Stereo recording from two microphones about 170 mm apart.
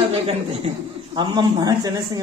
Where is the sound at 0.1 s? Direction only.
35° right (ahead or behind).